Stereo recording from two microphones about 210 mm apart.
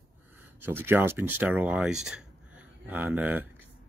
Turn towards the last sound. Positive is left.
turn(degrees=-10)  # may be behind; listen again after turning